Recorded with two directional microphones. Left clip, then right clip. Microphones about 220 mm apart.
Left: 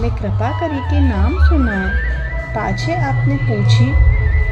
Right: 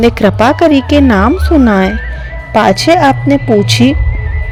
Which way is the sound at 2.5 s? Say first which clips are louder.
Right 14 dB; 40° right (ahead or behind).